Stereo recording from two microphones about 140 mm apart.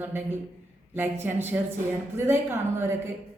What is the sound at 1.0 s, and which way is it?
A woman's voice, 15° right (ahead or behind).